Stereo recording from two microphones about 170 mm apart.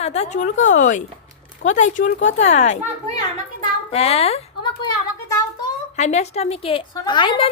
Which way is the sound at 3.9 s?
35° left (ahead or behind).